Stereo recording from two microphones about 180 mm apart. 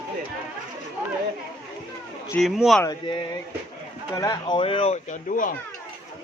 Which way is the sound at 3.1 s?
25° left (ahead or behind).